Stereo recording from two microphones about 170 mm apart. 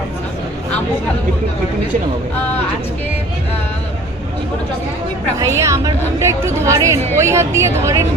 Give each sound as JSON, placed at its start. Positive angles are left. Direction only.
{"t": 5.4, "sound": "a woman's voice", "side_deg": -15}